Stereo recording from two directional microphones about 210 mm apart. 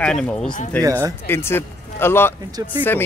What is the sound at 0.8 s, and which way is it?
Speech, 15° right (ahead or behind).